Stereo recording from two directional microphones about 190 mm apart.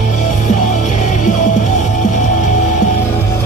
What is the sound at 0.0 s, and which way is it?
Music, 40° left (ahead or behind).